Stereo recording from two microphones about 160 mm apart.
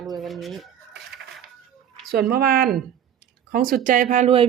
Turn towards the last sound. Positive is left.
turn(degrees=-40)  # may be behind; listen again after turning